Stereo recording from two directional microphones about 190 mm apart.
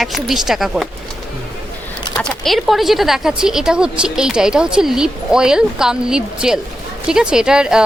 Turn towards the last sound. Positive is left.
turn(degrees=-5)  # may be behind; listen again after turning